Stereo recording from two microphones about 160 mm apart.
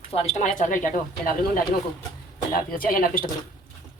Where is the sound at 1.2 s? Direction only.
65° left (ahead or behind).